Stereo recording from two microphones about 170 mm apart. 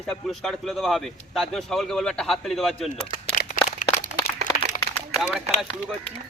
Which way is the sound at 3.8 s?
55° left (ahead or behind).